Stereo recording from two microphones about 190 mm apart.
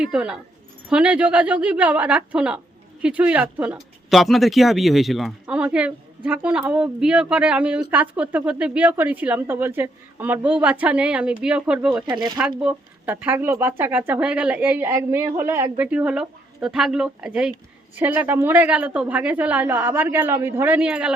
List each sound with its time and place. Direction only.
0.0 s speech: 5° right (ahead or behind)